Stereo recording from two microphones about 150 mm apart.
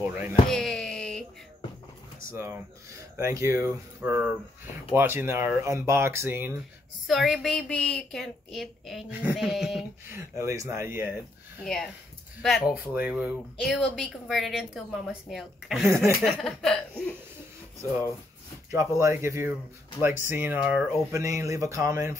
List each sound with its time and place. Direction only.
0.0 s a sound: 10° right (ahead or behind)
0.5 s a sound: 5° left (ahead or behind)
2.3 s speech: 15° right (ahead or behind)
7.1 s a woman's voice: centre (ahead or behind)
10.1 s speech: 20° right (ahead or behind)
11.6 s a woman's voice: centre (ahead or behind)
13.6 s a woman's voice: 5° left (ahead or behind)
18.7 s speech: 20° right (ahead or behind)
21.1 s speech: 20° right (ahead or behind)